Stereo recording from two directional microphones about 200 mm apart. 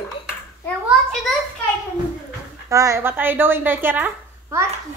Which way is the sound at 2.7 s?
15° right (ahead or behind).